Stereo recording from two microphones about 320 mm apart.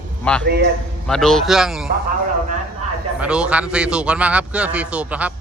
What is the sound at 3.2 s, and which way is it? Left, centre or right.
A man's voice, centre.